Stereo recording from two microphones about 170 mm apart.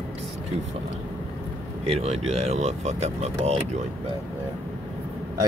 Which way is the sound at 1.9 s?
40° right (ahead or behind).